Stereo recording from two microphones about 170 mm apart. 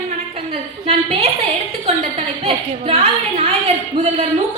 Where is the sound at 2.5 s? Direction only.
40° right (ahead or behind).